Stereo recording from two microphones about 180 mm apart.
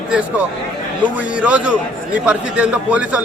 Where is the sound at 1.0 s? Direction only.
10° right (ahead or behind).